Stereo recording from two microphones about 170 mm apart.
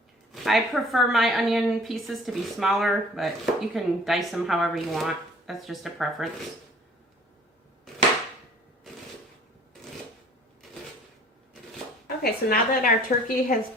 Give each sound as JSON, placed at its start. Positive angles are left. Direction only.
{"t": 0.3, "sound": "a woman's voice", "side_deg": 0}
{"t": 12.0, "sound": "speech", "side_deg": 60}